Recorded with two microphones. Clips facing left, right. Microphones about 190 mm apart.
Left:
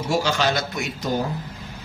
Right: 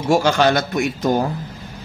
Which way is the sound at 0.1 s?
55° right (ahead or behind).